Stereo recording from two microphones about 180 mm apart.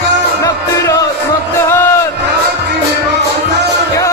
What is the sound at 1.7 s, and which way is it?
Crowd, 15° left (ahead or behind).